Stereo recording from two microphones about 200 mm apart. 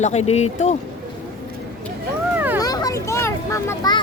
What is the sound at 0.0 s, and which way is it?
Speech, 35° left (ahead or behind).